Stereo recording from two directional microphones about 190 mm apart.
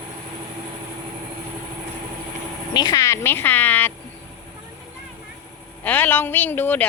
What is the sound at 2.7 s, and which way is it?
A woman's voice, 20° left (ahead or behind).